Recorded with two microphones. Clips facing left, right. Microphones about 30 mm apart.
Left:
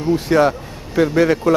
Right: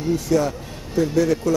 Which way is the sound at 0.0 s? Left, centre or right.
Left.